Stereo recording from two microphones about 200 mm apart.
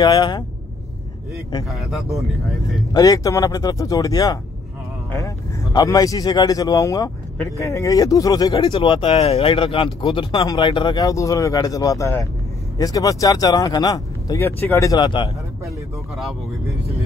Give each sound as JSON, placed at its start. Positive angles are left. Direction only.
{"t": 0.0, "sound": "speech", "side_deg": 20}
{"t": 1.7, "sound": "a man's voice", "side_deg": 0}
{"t": 2.9, "sound": "speech", "side_deg": 20}